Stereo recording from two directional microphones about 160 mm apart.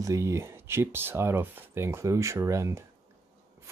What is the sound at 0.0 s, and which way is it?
Speech, 20° right (ahead or behind).